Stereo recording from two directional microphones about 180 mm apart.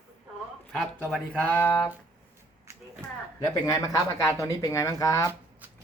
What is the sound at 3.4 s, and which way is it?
Speech, 20° left (ahead or behind).